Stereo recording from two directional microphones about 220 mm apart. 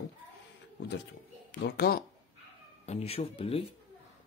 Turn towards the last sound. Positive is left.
turn(degrees=25)  # may be behind; listen again after turning